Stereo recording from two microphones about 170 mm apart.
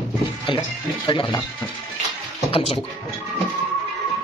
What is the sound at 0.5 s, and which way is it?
Speech, 30° left (ahead or behind).